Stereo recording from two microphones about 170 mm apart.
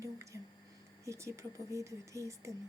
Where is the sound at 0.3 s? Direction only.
15° right (ahead or behind).